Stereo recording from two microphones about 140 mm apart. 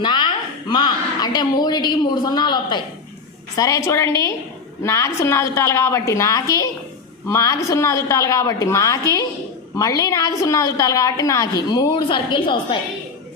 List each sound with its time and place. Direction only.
0.0 s a woman's voice: 30° left (ahead or behind)